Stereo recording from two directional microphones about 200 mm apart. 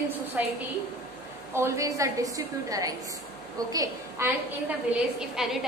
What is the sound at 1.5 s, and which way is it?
A woman's voice, 15° right (ahead or behind).